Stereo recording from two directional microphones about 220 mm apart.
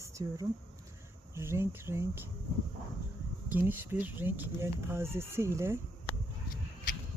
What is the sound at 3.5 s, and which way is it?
Speech, 10° right (ahead or behind).